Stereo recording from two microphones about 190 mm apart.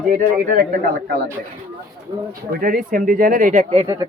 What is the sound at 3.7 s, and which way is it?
Speech, 20° right (ahead or behind).